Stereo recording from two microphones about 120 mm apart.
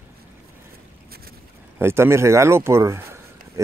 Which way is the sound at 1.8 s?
20° right (ahead or behind).